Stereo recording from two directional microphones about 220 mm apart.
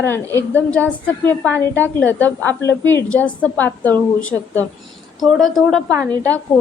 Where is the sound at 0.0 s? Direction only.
10° left (ahead or behind).